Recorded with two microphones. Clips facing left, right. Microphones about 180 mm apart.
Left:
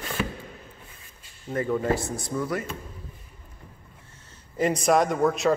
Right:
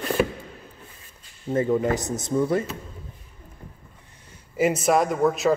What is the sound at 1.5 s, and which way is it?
Speech, 20° right (ahead or behind).